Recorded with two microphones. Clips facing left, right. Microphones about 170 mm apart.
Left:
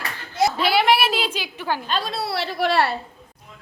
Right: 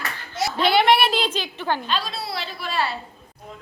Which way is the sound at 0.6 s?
5° left (ahead or behind).